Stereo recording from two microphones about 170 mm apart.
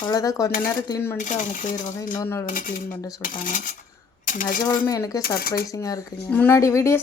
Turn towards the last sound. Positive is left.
turn(degrees=15)  # may be behind; listen again after turning